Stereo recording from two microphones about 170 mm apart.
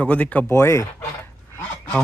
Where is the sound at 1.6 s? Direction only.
10° left (ahead or behind).